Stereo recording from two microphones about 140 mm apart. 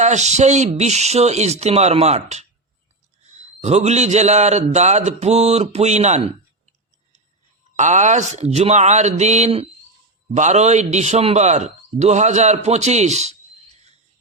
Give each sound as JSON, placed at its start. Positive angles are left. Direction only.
{"t": 0.0, "sound": "a man's voice", "side_deg": -55}
{"t": 7.8, "sound": "a man's voice", "side_deg": -60}